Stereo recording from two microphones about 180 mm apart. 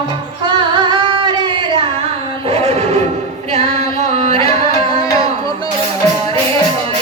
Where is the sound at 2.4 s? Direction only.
30° right (ahead or behind).